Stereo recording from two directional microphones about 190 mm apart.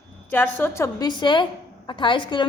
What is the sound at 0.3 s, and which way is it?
A woman's voice, 10° left (ahead or behind).